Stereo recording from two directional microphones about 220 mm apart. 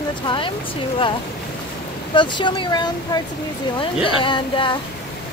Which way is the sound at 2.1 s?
20° left (ahead or behind).